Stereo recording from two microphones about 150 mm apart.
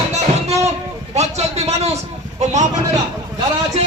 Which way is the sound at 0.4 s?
45° right (ahead or behind).